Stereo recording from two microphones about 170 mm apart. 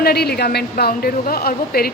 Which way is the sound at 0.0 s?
70° left (ahead or behind).